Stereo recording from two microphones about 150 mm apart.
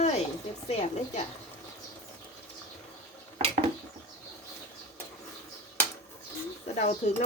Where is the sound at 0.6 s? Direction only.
45° left (ahead or behind).